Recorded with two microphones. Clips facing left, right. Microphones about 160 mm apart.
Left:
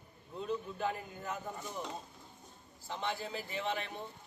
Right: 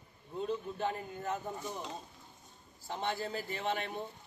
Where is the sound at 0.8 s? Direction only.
35° right (ahead or behind).